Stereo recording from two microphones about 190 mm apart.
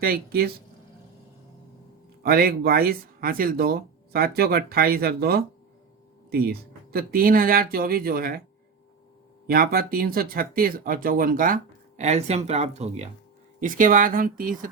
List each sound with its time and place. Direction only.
0.0 s speech: 50° right (ahead or behind)
2.2 s speech: 50° right (ahead or behind)
9.5 s speech: 50° right (ahead or behind)